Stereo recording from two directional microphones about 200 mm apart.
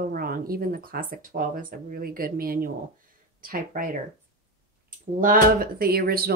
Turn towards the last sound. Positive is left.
turn(degrees=-50)  # may be behind; listen again after turning